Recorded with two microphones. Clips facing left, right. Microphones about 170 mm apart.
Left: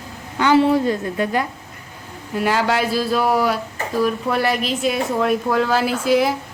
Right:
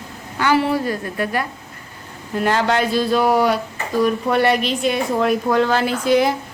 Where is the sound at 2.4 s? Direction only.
5° left (ahead or behind).